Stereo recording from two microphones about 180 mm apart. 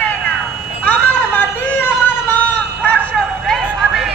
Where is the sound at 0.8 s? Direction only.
10° left (ahead or behind).